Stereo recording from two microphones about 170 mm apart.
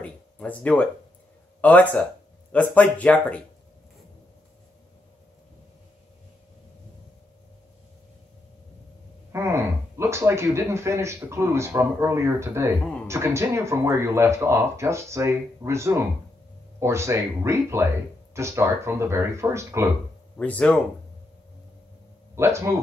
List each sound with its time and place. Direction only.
0.0 s a sound: 10° left (ahead or behind)
1.6 s speech: 10° left (ahead or behind)
9.3 s speech: 15° right (ahead or behind)
20.3 s speech: 10° left (ahead or behind)
22.3 s speech: 15° right (ahead or behind)